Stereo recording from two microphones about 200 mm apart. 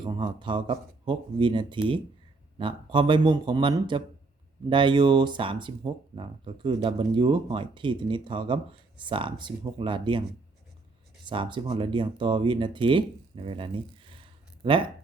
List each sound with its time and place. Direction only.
0.0 s speech: 25° right (ahead or behind)
11.3 s speech: 25° right (ahead or behind)